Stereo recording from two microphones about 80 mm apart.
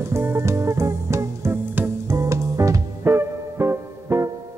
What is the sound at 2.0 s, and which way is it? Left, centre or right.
Music, right.